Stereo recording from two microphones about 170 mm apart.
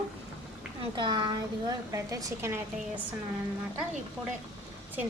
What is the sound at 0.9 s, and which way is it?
A woman's voice, 30° right (ahead or behind).